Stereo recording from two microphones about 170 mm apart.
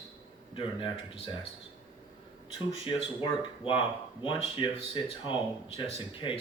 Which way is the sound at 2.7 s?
30° left (ahead or behind).